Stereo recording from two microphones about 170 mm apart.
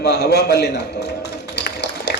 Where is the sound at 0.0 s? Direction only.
75° left (ahead or behind).